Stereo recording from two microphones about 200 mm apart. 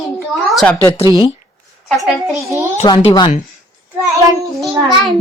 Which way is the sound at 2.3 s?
15° right (ahead or behind).